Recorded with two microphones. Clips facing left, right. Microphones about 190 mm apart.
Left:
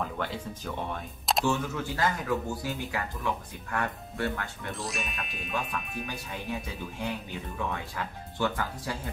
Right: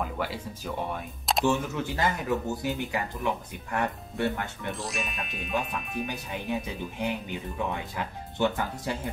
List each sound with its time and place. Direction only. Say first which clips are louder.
0.0 s speech: right 1 dB; 10° right (ahead or behind)
1.4 s speech: right 4 dB; 20° right (ahead or behind)
4.7 s speech: right 2 dB; centre (ahead or behind)
7.0 s speech: right 3 dB; 20° right (ahead or behind)